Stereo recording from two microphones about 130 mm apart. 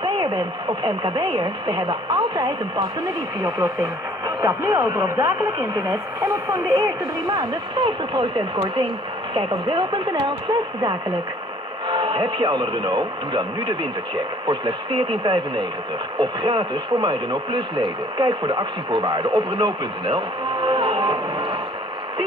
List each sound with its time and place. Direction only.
0.0 s speech: 35° right (ahead or behind)
9.3 s speech: 40° right (ahead or behind)